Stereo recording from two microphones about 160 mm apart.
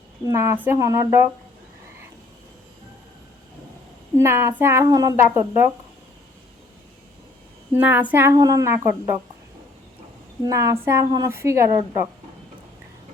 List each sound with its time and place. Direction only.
0.3 s speech: 15° right (ahead or behind)
4.2 s speech: 15° right (ahead or behind)
7.7 s speech: 10° right (ahead or behind)
10.4 s a woman's voice: 20° right (ahead or behind)